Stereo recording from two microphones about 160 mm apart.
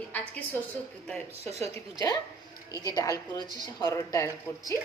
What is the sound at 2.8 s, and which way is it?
A woman's voice, 25° left (ahead or behind).